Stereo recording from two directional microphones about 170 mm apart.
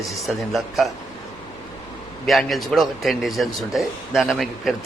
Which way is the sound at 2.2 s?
Centre (ahead or behind).